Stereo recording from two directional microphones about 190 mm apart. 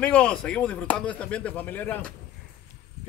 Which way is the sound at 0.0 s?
5° left (ahead or behind).